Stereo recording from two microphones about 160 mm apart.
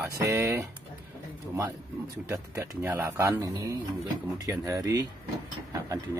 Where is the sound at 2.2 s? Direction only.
15° right (ahead or behind).